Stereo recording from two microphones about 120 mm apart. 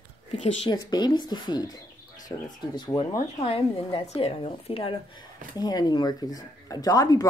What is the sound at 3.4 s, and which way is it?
Speech, 55° left (ahead or behind).